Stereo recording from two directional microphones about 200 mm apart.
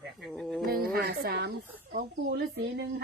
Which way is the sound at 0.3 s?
Centre (ahead or behind).